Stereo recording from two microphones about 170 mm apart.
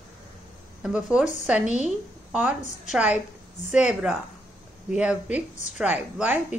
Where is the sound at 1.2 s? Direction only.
45° left (ahead or behind).